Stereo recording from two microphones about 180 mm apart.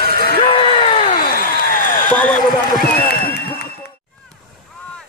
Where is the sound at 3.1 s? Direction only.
60° left (ahead or behind).